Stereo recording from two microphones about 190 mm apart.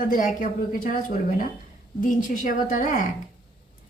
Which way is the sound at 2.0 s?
45° left (ahead or behind).